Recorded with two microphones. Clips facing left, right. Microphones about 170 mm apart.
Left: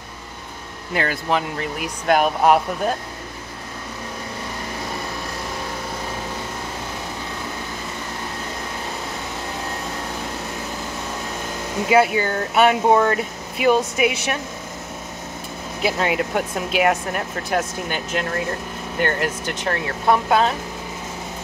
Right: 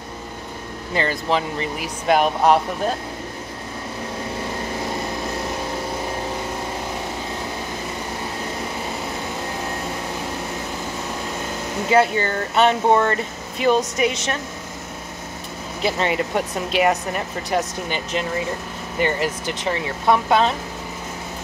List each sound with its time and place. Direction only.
0.9 s speech: 5° left (ahead or behind)
11.9 s speech: 5° left (ahead or behind)
15.8 s speech: 5° left (ahead or behind)